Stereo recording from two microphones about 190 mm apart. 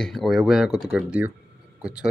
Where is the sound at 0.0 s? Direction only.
Centre (ahead or behind).